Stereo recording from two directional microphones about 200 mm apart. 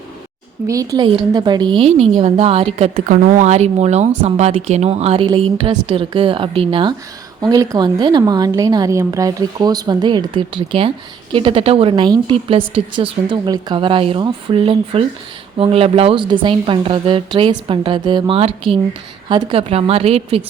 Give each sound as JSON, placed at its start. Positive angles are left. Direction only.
{"t": 0.7, "sound": "a woman's voice", "side_deg": -15}